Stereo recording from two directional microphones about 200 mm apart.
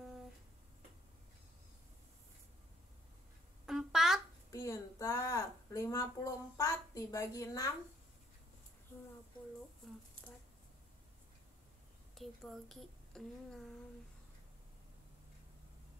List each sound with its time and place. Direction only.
3.6 s a sound: centre (ahead or behind)
4.5 s a woman's voice: 15° left (ahead or behind)
12.2 s speech: centre (ahead or behind)